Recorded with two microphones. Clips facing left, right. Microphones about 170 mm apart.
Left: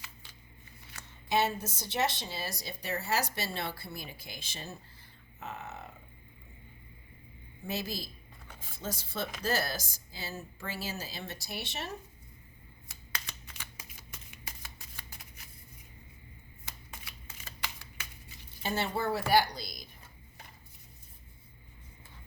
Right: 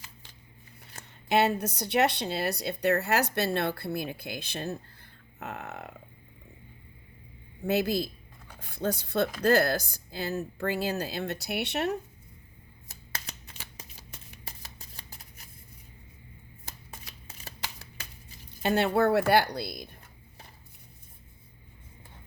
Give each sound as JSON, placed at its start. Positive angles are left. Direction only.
{"t": 0.9, "sound": "a woman's voice", "side_deg": -65}
{"t": 5.4, "sound": "a sound", "side_deg": -65}
{"t": 7.7, "sound": "a woman's voice", "side_deg": -65}
{"t": 13.2, "sound": "shuffling cards", "side_deg": -35}
{"t": 16.9, "sound": "shuffling cards", "side_deg": -35}
{"t": 18.6, "sound": "a woman's voice", "side_deg": -65}